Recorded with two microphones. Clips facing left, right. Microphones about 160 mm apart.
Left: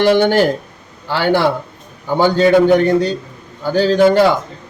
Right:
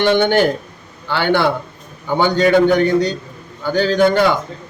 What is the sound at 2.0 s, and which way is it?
Speech, 5° left (ahead or behind).